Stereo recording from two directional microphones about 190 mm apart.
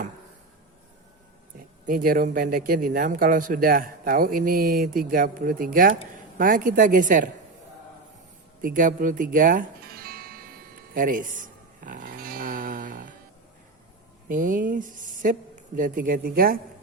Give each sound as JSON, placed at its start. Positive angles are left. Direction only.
{"t": 1.9, "sound": "speech", "side_deg": -45}
{"t": 8.6, "sound": "music", "side_deg": -45}
{"t": 14.3, "sound": "speech", "side_deg": -45}